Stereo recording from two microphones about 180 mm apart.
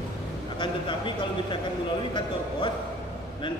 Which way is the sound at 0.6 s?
25° left (ahead or behind).